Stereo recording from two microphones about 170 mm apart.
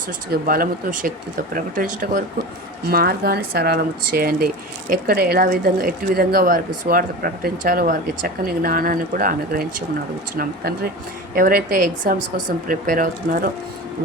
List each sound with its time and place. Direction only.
0.3 s speech: 55° right (ahead or behind)
2.8 s speech: 65° right (ahead or behind)